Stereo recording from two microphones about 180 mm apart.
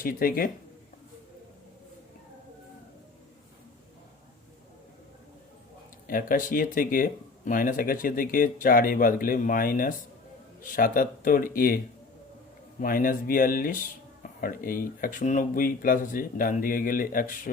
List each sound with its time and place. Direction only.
0.0 s speech: 55° left (ahead or behind)
6.1 s speech: 50° left (ahead or behind)
12.8 s speech: 50° left (ahead or behind)